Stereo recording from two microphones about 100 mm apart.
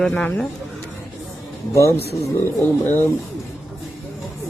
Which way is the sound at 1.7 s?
30° left (ahead or behind).